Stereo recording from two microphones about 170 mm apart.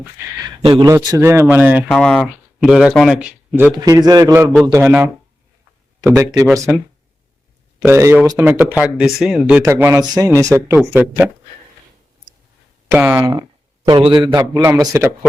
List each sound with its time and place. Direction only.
0.4 s a man's voice: 30° right (ahead or behind); by 1.8 s 10° right (ahead or behind)
1.9 s speech: 5° left (ahead or behind)
3.7 s a man's voice: 20° right (ahead or behind)
4.8 s a man's voice: 10° right (ahead or behind)
7.9 s speech: 15° right (ahead or behind)
12.9 s speech: 15° right (ahead or behind)
13.8 s a man's voice: 25° right (ahead or behind)